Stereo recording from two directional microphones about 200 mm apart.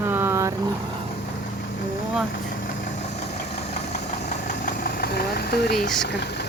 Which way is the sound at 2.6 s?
35° left (ahead or behind).